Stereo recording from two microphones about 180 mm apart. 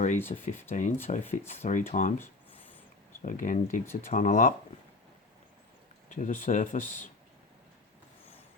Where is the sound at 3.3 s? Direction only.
45° left (ahead or behind).